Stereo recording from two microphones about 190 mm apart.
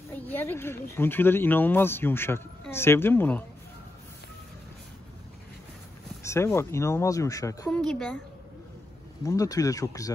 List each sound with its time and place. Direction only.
0.1 s a man's voice: 10° left (ahead or behind)
6.2 s a man's voice: 15° left (ahead or behind)
7.7 s speech: 5° left (ahead or behind)
9.2 s a man's voice: 15° left (ahead or behind)